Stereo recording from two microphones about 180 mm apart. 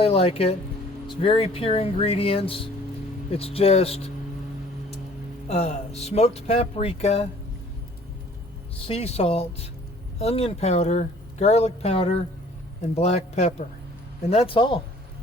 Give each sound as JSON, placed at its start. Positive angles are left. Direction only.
{"t": 0.0, "sound": "speech", "side_deg": 30}
{"t": 5.5, "sound": "speech", "side_deg": 40}
{"t": 8.9, "sound": "a man's voice", "side_deg": 35}